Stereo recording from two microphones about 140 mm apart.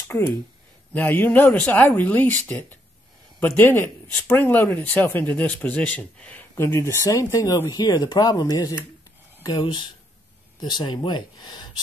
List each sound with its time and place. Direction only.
0.9 s speech: 15° left (ahead or behind); by 11.8 s 30° left (ahead or behind)